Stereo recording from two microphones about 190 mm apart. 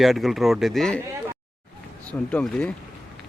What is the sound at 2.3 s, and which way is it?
Speech, 5° left (ahead or behind).